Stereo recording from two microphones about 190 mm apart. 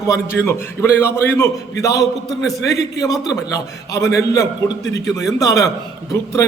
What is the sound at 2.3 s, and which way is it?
Speech, centre (ahead or behind).